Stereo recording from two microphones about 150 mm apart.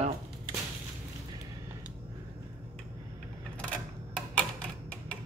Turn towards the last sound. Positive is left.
turn(degrees=10)  # may be behind; listen again after turning